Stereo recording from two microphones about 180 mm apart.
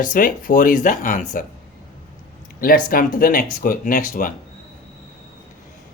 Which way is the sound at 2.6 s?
50° left (ahead or behind).